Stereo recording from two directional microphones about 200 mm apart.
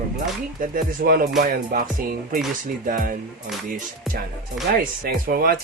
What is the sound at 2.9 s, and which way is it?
Speech, 45° right (ahead or behind).